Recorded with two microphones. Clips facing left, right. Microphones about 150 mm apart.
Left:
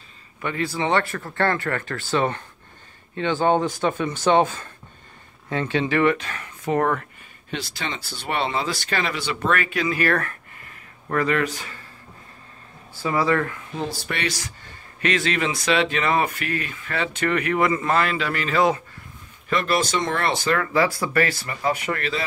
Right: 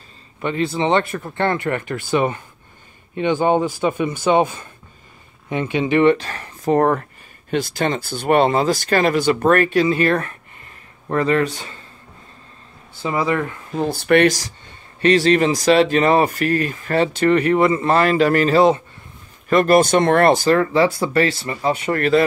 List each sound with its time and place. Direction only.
0.4 s speech: 25° right (ahead or behind)
6.1 s speech: 35° right (ahead or behind)
7.5 s speech: 50° right (ahead or behind); by 11.8 s 25° right (ahead or behind)
12.9 s speech: 20° right (ahead or behind)
13.7 s speech: 55° right (ahead or behind)
15.0 s speech: 35° right (ahead or behind); by 20.4 s 50° right (ahead or behind)
20.4 s speech: 30° right (ahead or behind)
21.9 s speech: 50° right (ahead or behind)